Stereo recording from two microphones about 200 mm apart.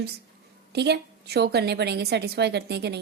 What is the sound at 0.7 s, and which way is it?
A woman's voice, 55° right (ahead or behind).